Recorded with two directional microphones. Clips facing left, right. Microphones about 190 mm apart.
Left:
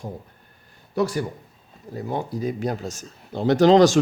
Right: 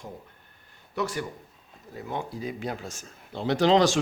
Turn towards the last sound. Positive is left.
turn(degrees=45)  # may be behind; listen again after turning